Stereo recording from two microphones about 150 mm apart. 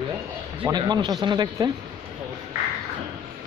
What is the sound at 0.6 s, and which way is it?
Speech, 30° right (ahead or behind).